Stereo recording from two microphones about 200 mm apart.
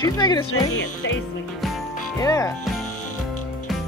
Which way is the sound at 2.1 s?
15° left (ahead or behind).